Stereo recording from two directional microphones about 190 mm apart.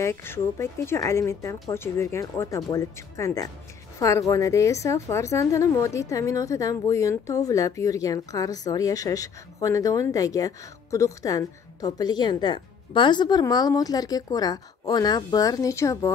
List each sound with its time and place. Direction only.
0.0 s a woman's voice: 10° left (ahead or behind)